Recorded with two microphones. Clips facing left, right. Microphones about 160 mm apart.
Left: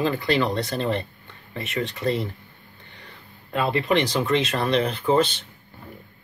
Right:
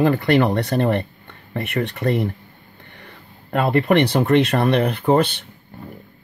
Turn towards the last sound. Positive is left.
turn(degrees=-60)  # may be behind; listen again after turning